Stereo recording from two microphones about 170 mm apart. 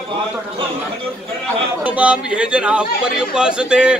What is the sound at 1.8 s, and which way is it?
A man's voice, 10° right (ahead or behind).